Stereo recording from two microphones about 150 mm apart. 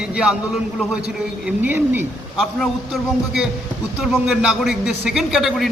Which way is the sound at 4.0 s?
5° right (ahead or behind).